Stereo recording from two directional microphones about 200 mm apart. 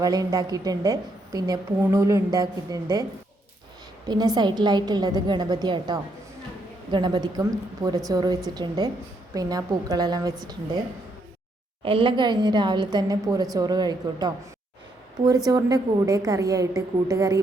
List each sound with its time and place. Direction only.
0.0 s a woman's voice: 15° right (ahead or behind)
4.1 s a woman's voice: 20° right (ahead or behind)
11.8 s a woman's voice: 25° right (ahead or behind)
15.4 s a woman's voice: 20° right (ahead or behind)